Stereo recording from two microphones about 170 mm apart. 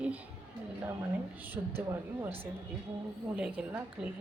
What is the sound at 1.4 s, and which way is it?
A woman's voice, 10° right (ahead or behind).